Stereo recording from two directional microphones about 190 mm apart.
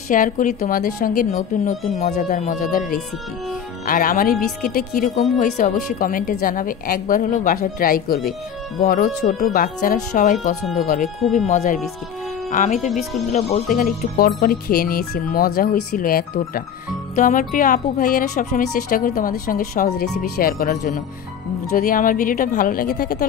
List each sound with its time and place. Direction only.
0.1 s speech: 45° left (ahead or behind)
3.8 s speech: 50° left (ahead or behind)